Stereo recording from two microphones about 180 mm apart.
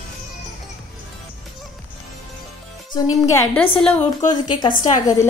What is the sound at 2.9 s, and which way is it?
A woman's voice, 15° left (ahead or behind).